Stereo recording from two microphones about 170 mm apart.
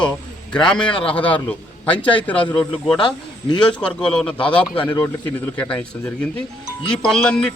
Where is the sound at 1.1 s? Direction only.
10° left (ahead or behind).